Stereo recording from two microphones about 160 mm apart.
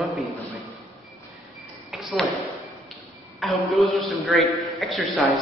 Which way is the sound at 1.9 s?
Centre (ahead or behind).